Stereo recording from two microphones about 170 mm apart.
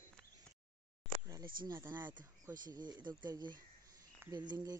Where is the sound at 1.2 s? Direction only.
25° right (ahead or behind).